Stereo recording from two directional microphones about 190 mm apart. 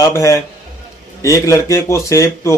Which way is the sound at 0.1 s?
15° left (ahead or behind).